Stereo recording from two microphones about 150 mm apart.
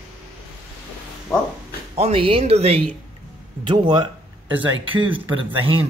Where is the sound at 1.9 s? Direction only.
35° right (ahead or behind).